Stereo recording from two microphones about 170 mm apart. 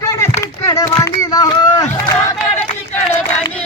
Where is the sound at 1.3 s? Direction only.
20° left (ahead or behind).